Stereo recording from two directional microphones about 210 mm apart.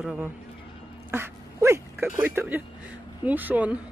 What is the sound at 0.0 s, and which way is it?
Speech, 5° right (ahead or behind).